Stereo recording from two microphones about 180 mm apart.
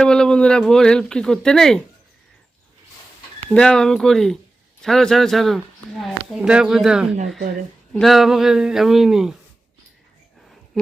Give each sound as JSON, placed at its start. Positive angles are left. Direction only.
{"t": 0.0, "sound": "speech", "side_deg": 5}
{"t": 3.4, "sound": "speech", "side_deg": 5}